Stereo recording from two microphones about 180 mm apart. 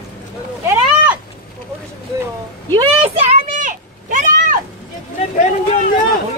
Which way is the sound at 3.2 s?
40° right (ahead or behind).